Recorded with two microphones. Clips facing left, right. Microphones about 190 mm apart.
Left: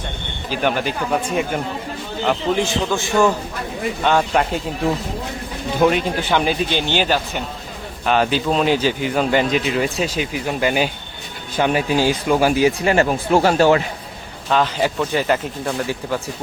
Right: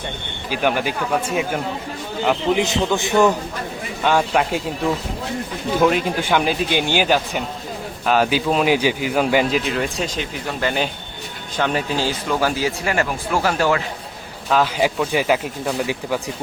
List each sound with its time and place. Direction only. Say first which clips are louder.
0.5 s speech: even; 10° right (ahead or behind)
4.0 s speech: even; 5° right (ahead or behind)
6.2 s speech: even; 5° right (ahead or behind); by 13.8 s 30° left (ahead or behind)
14.5 s speech: even; 10° right (ahead or behind)